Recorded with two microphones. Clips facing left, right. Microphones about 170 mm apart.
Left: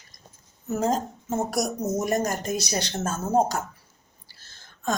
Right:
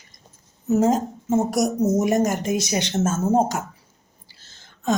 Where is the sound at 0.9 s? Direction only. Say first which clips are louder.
Right 6 dB; 20° right (ahead or behind).